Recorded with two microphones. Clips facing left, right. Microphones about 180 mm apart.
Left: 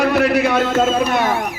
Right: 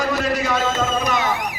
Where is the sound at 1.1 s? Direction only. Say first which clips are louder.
Left 4 dB; 55° left (ahead or behind).